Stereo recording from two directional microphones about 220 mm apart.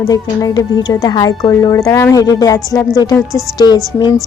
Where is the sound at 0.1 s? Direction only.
20° left (ahead or behind).